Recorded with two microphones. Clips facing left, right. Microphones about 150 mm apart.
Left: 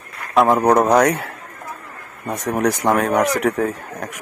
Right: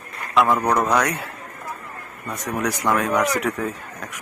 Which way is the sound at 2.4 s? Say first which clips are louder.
Left 5 dB; 50° left (ahead or behind).